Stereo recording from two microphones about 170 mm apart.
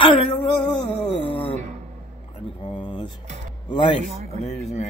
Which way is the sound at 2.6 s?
25° left (ahead or behind).